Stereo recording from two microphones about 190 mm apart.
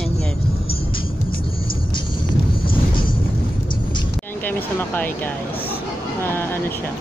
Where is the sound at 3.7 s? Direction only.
25° left (ahead or behind).